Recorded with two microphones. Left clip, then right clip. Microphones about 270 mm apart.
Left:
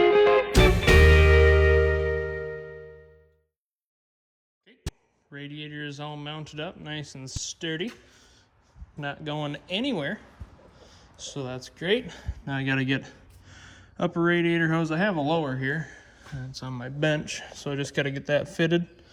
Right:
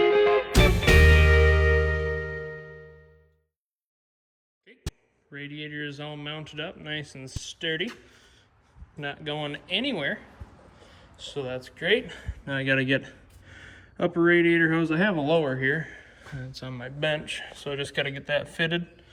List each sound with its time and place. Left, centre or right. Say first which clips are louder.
0.0 s music: left 2 dB; centre
5.3 s speech: right 2 dB; centre
9.0 s speech: even; centre